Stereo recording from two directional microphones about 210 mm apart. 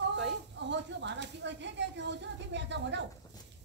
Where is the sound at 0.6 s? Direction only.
55° right (ahead or behind).